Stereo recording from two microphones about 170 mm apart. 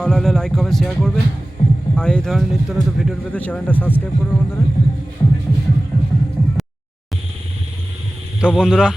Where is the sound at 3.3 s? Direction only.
10° left (ahead or behind).